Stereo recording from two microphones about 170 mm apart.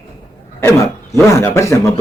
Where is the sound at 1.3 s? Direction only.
15° left (ahead or behind).